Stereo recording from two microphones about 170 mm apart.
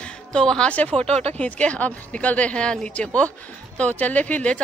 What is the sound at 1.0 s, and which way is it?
Speech, 35° right (ahead or behind).